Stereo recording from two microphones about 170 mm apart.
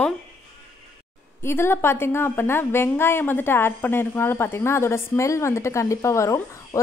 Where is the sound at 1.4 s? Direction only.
15° left (ahead or behind).